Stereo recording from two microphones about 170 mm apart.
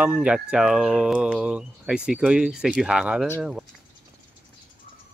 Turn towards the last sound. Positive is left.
turn(degrees=-5)  # may be behind; listen again after turning